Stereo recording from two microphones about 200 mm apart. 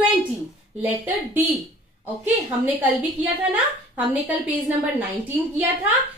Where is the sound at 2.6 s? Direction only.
10° right (ahead or behind).